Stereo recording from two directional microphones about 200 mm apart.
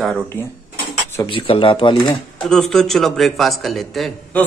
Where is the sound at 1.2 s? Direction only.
25° left (ahead or behind).